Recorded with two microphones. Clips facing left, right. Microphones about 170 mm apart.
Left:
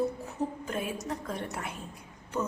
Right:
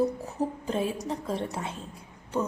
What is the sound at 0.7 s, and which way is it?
A woman's voice, 30° right (ahead or behind).